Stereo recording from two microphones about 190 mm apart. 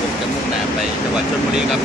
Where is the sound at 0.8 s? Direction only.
5° right (ahead or behind).